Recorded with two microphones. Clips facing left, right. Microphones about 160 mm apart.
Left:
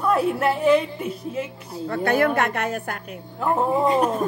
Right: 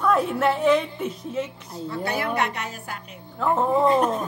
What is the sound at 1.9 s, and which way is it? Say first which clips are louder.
A woman's voice: left 7 dB; 50° left (ahead or behind).